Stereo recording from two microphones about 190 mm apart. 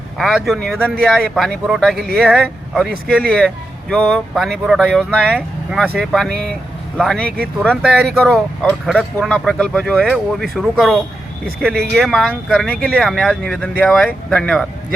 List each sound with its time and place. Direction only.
0.2 s speech: centre (ahead or behind)
7.3 s speech: 55° right (ahead or behind)
7.8 s speech: centre (ahead or behind)